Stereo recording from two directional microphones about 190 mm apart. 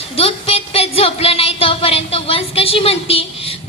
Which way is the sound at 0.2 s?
30° left (ahead or behind).